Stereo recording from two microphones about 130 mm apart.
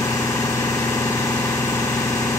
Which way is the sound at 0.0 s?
25° left (ahead or behind).